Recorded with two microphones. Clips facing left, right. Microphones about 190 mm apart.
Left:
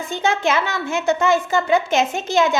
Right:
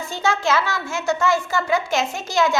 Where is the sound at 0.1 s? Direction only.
20° left (ahead or behind).